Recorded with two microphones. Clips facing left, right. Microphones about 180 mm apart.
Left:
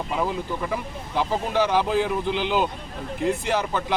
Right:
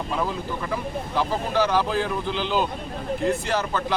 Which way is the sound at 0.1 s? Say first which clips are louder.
Left 2 dB; 15° left (ahead or behind).